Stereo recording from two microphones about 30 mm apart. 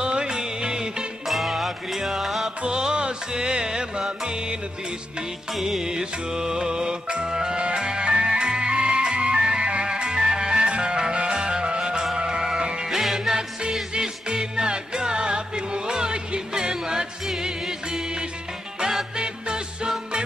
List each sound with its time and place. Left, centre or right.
0.0 s music: right
1.2 s music: centre
2.9 s music: right
5.5 s music: centre
5.9 s music: right
13.0 s music: centre
13.4 s music: right